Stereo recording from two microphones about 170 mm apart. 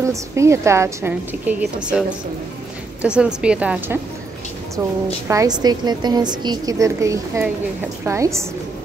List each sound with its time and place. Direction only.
0.0 s a woman's voice: 15° right (ahead or behind)
5.3 s a woman's voice: 20° right (ahead or behind)